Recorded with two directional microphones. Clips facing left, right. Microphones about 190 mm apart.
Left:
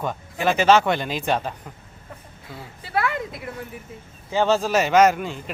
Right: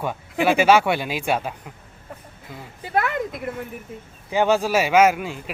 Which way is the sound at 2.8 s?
45° right (ahead or behind).